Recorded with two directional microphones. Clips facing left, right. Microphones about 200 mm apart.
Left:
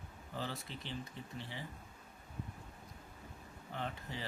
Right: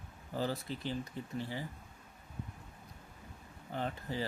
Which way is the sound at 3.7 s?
40° right (ahead or behind).